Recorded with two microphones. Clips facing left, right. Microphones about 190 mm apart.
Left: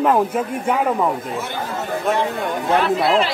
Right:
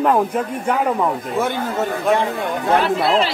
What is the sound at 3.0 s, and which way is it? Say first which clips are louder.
Speech: even; centre (ahead or behind).